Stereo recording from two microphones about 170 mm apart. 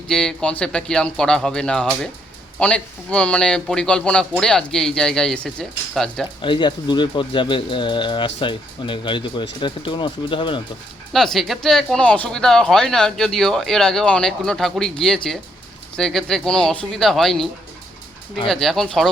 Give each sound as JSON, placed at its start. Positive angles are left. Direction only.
{"t": 0.1, "sound": "speech", "side_deg": 5}
{"t": 6.4, "sound": "speech", "side_deg": 30}
{"t": 11.1, "sound": "speech", "side_deg": 0}